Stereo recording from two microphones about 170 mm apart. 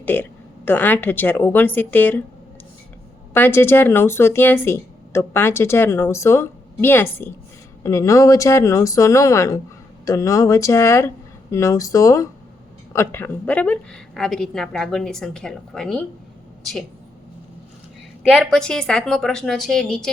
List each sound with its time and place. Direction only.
0.0 s a woman's voice: 10° left (ahead or behind)
3.3 s a woman's voice: 10° left (ahead or behind)
18.2 s a woman's voice: centre (ahead or behind)